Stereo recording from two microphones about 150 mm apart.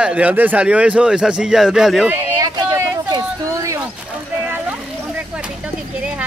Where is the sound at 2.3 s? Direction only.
25° right (ahead or behind).